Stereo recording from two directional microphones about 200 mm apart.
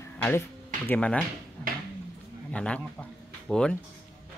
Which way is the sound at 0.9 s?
5° left (ahead or behind).